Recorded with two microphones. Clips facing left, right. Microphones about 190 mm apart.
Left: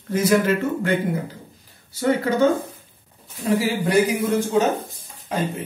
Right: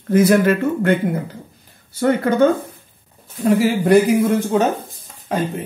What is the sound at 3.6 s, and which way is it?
Speech, 50° right (ahead or behind).